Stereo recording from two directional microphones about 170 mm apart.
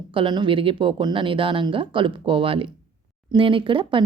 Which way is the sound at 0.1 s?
30° right (ahead or behind).